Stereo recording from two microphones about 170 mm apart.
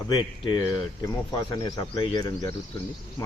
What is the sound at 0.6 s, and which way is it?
Speech, 20° left (ahead or behind).